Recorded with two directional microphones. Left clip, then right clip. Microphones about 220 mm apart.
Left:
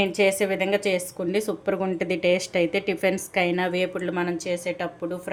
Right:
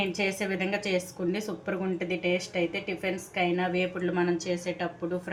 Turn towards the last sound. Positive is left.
turn(degrees=30)  # may be behind; listen again after turning